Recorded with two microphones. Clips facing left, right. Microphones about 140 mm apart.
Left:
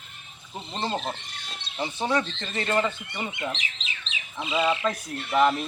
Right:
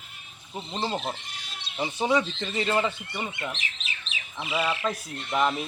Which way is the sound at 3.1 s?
20° left (ahead or behind).